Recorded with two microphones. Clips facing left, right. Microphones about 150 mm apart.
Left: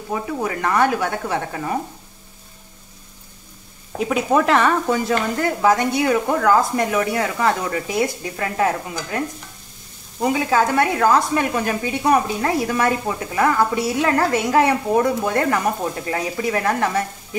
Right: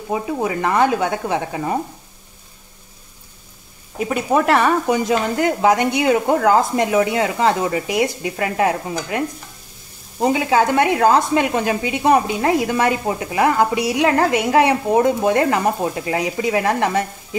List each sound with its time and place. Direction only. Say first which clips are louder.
0.1 s speech: right 3 dB; 20° right (ahead or behind)
4.0 s speech: even; centre (ahead or behind)
4.8 s speech: right 2 dB; 15° right (ahead or behind)
10.3 s speech: right 1 dB; 20° right (ahead or behind)